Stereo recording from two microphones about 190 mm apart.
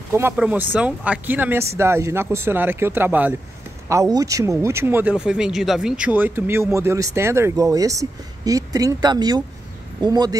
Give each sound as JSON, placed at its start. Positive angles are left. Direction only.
{"t": 0.1, "sound": "speech", "side_deg": -10}